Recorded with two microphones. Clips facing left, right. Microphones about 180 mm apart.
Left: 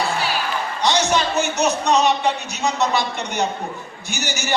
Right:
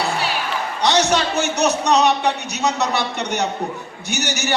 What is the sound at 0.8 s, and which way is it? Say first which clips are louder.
A man's voice: right 2 dB; 70° right (ahead or behind).